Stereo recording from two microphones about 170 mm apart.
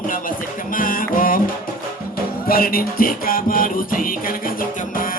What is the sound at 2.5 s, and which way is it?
Music, 60° left (ahead or behind).